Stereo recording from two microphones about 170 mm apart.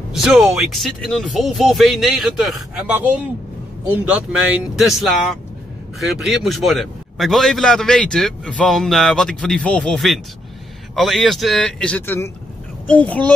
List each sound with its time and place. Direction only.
0.1 s a man's voice: 5° right (ahead or behind)